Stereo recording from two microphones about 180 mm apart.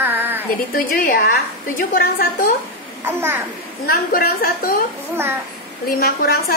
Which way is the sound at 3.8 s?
55° left (ahead or behind).